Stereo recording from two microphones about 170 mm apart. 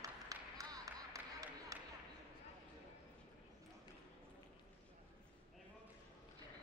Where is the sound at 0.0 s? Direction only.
20° right (ahead or behind).